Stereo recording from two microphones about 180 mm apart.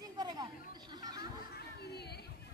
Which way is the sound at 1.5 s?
65° left (ahead or behind).